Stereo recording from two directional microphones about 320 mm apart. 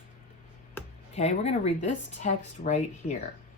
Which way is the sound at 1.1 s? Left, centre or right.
Centre.